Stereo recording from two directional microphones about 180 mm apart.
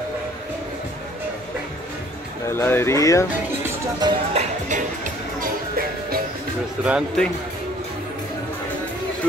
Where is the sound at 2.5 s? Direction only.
15° left (ahead or behind).